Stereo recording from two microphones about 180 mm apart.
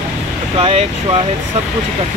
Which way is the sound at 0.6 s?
35° right (ahead or behind).